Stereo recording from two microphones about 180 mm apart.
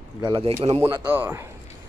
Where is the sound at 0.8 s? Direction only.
10° right (ahead or behind).